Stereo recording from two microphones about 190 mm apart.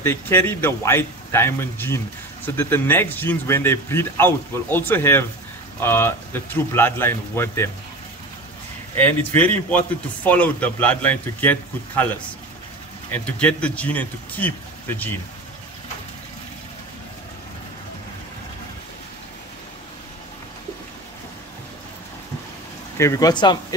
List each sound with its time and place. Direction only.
0.0 s a man's voice: 10° left (ahead or behind)
8.9 s a man's voice: 10° left (ahead or behind)
22.9 s speech: 15° left (ahead or behind)